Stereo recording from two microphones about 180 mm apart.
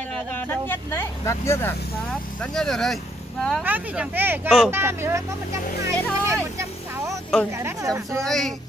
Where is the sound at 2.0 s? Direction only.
Centre (ahead or behind).